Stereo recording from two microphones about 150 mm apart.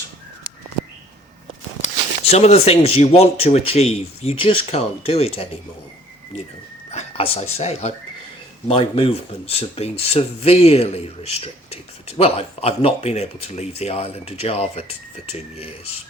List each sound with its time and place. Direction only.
1.8 s speech: 45° left (ahead or behind)
6.9 s speech: 40° left (ahead or behind)